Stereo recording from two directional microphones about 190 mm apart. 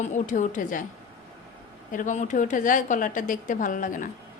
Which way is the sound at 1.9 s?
40° left (ahead or behind).